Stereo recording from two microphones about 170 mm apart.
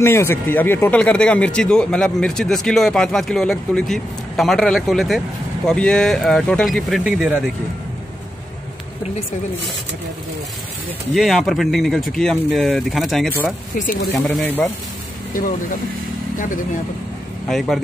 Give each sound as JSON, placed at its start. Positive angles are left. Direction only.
{"t": 0.0, "sound": "speech", "side_deg": 15}
{"t": 11.1, "sound": "speech", "side_deg": 0}
{"t": 13.7, "sound": "speech", "side_deg": 55}
{"t": 14.1, "sound": "speech", "side_deg": 0}
{"t": 17.5, "sound": "speech", "side_deg": 0}